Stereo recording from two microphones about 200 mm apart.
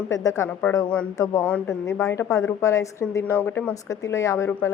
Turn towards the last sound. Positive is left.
turn(degrees=15)  # may be behind; listen again after turning